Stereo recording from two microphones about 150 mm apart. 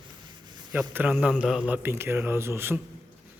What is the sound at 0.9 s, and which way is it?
A man's voice, 10° right (ahead or behind).